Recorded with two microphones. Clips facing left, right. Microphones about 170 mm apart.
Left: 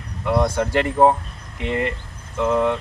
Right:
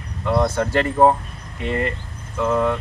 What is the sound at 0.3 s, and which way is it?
Speech, 10° left (ahead or behind).